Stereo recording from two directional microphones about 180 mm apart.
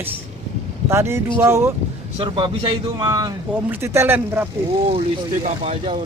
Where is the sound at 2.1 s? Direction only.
30° right (ahead or behind); by 4.4 s 10° right (ahead or behind).